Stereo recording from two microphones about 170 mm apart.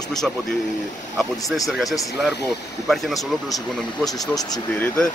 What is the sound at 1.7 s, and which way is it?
Speech, centre (ahead or behind).